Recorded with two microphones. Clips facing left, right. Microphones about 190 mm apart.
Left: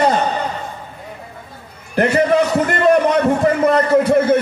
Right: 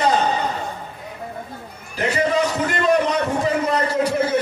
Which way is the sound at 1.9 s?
60° left (ahead or behind).